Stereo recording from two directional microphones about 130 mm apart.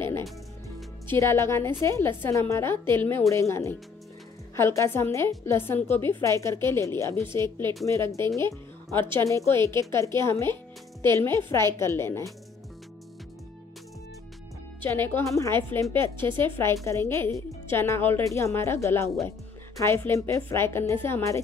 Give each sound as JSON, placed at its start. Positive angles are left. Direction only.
{"t": 0.0, "sound": "music", "side_deg": 20}
{"t": 1.0, "sound": "a woman's voice", "side_deg": 20}
{"t": 15.0, "sound": "a woman's voice", "side_deg": 15}